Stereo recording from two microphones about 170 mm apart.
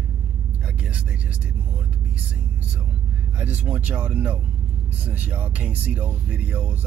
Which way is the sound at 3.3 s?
10° right (ahead or behind).